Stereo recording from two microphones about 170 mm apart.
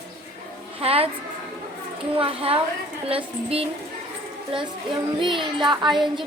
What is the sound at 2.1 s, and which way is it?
Speech, 35° right (ahead or behind).